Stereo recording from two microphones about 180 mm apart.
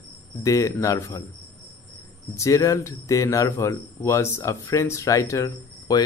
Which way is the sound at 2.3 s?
15° left (ahead or behind).